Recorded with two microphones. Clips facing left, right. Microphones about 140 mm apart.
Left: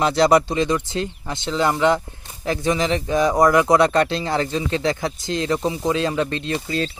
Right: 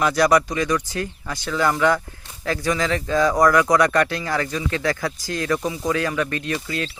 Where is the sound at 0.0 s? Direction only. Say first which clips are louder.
Left 2 dB; 25° left (ahead or behind).